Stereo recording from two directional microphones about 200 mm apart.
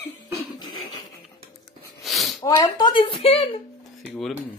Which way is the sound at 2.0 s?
Centre (ahead or behind).